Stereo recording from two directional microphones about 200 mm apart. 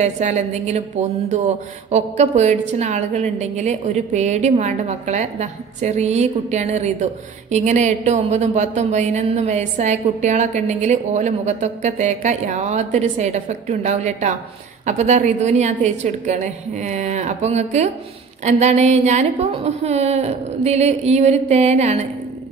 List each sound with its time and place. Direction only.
0.0 s a woman's voice: 35° right (ahead or behind)
1.9 s a woman's voice: 35° right (ahead or behind)